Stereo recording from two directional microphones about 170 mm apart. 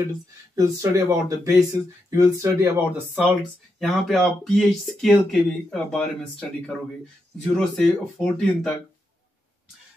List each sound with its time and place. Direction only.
0.6 s speech: 20° right (ahead or behind)
3.8 s speech: centre (ahead or behind)
7.4 s speech: 5° left (ahead or behind)